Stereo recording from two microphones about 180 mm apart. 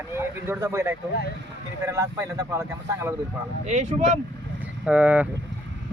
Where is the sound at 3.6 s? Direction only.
40° right (ahead or behind).